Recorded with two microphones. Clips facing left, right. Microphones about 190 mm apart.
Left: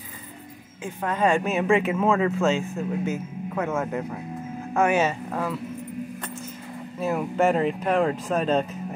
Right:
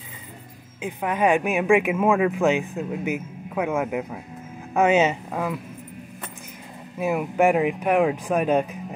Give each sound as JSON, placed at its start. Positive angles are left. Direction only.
{"t": 0.8, "sound": "speech", "side_deg": -15}
{"t": 7.0, "sound": "speech", "side_deg": -10}